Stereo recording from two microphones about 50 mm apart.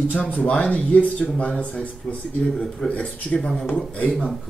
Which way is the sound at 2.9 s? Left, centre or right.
Left.